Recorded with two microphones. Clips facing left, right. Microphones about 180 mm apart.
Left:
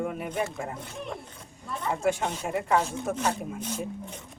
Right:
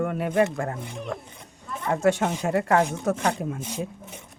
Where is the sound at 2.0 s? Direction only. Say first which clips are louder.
Right 6 dB; 80° right.